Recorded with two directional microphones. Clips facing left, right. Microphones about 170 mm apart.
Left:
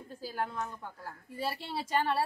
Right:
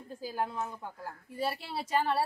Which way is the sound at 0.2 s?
10° right (ahead or behind).